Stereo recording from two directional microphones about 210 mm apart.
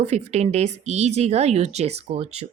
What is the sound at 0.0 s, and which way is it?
A woman's voice, 30° right (ahead or behind).